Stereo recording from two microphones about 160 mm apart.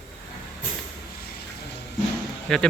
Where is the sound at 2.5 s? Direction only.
5° left (ahead or behind).